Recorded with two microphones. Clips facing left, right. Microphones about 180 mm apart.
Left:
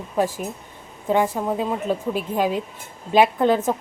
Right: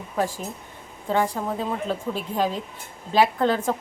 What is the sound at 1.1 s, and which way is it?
A woman's voice, 15° left (ahead or behind).